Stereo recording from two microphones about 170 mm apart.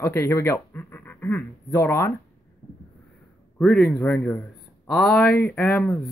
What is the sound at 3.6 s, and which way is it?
A man's voice, centre (ahead or behind).